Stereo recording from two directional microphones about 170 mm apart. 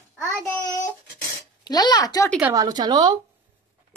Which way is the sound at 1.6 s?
25° left (ahead or behind).